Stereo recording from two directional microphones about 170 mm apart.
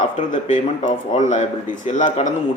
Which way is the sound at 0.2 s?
45° left (ahead or behind).